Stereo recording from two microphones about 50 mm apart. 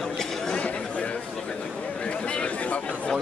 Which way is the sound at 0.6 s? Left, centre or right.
Left.